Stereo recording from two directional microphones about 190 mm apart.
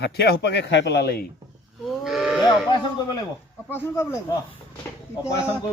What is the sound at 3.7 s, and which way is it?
Speech, 15° left (ahead or behind).